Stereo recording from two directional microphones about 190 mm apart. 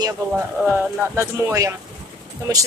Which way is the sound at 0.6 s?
10° right (ahead or behind).